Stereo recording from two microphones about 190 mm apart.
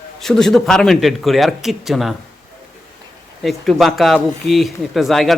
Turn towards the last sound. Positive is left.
turn(degrees=0)  # may be behind; listen again after turning